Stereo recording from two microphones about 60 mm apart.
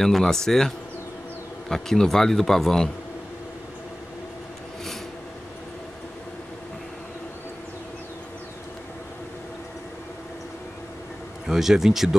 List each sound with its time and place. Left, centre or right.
0.0 s speech: centre
11.4 s speech: centre